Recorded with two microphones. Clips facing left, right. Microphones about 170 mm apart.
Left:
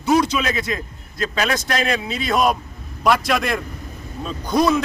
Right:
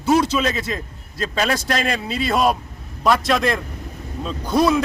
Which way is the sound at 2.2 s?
5° right (ahead or behind).